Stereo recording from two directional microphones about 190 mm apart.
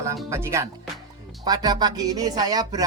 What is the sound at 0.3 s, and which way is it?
Music, 15° right (ahead or behind).